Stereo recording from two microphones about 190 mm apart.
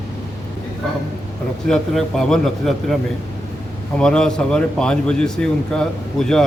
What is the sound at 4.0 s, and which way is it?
A man's voice, 5° left (ahead or behind).